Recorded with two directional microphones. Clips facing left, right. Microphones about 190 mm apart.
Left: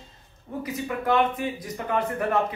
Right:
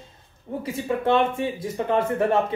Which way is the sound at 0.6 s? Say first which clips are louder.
Right 4 dB; 25° right (ahead or behind).